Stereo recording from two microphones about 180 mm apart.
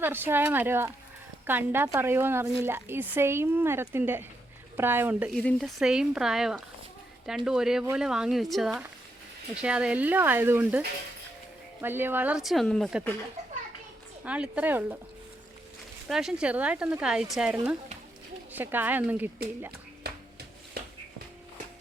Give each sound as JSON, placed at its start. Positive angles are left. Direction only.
{"t": 0.0, "sound": "a woman's voice", "side_deg": -10}
{"t": 5.3, "sound": "a woman's voice", "side_deg": 5}
{"t": 14.3, "sound": "a woman's voice", "side_deg": -5}
{"t": 16.0, "sound": "a woman's voice", "side_deg": -5}
{"t": 20.8, "sound": "music", "side_deg": -60}